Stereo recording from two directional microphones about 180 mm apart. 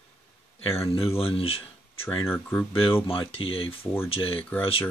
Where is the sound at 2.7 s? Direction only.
30° left (ahead or behind).